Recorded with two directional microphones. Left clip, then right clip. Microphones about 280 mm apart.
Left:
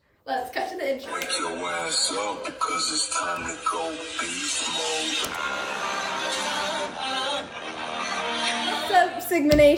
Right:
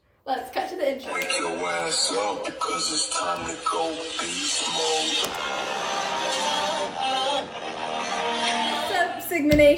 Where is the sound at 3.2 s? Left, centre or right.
Right.